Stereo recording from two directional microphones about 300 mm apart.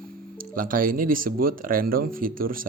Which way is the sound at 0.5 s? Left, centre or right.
Right.